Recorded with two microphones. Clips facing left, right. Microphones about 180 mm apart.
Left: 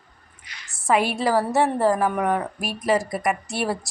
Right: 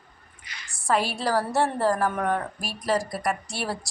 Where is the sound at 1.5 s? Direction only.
15° left (ahead or behind).